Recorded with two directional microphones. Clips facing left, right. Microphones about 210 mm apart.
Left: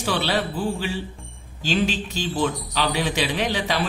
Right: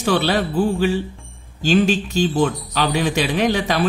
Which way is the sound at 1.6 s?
45° right (ahead or behind).